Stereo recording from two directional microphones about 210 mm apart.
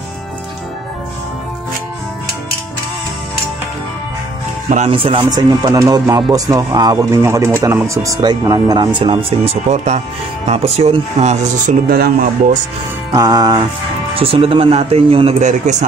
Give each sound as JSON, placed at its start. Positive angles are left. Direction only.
{"t": 4.6, "sound": "speech", "side_deg": -30}
{"t": 13.1, "sound": "music", "side_deg": -20}
{"t": 14.1, "sound": "speech", "side_deg": -25}